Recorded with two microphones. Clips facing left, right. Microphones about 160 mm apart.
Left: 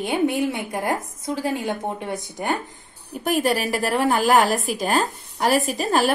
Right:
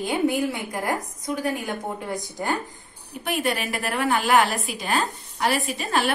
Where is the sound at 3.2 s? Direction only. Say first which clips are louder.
Left 5 dB; 40° left (ahead or behind).